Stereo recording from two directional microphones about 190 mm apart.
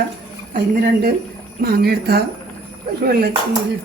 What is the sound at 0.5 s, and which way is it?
Speech, 55° right (ahead or behind).